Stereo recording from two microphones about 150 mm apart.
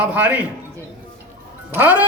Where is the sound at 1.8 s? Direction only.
10° right (ahead or behind).